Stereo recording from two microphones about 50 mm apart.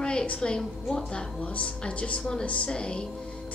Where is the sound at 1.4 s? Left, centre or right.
Left.